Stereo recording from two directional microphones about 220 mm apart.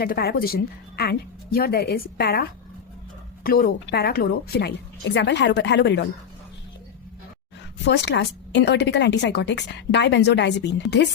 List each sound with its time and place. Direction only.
0.0 s a woman's voice: 45° left (ahead or behind)
7.9 s a woman's voice: 50° left (ahead or behind)